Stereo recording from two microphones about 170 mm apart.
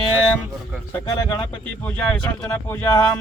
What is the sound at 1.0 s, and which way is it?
Speech, 25° left (ahead or behind).